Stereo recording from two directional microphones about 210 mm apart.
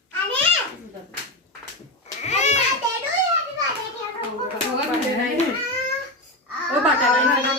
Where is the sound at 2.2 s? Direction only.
35° left (ahead or behind).